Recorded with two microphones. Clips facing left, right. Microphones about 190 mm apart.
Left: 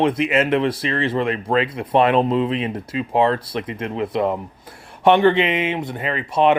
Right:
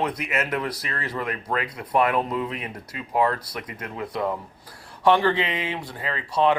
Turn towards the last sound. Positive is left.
turn(degrees=20)  # may be behind; listen again after turning